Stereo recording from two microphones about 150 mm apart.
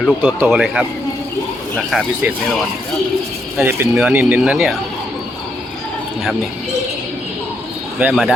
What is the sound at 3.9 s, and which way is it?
Speech, 5° right (ahead or behind).